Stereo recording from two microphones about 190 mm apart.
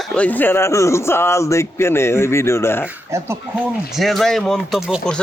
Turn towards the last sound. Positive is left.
turn(degrees=0)  # may be behind; listen again after turning